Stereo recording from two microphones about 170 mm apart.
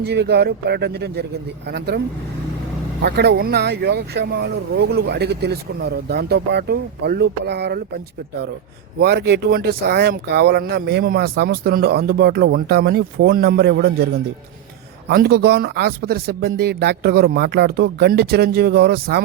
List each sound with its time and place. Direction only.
0.0 s speech: 75° right (ahead or behind)
3.0 s speech: 70° right (ahead or behind)
9.0 s speech: 70° right (ahead or behind)
15.0 s speech: 65° right (ahead or behind)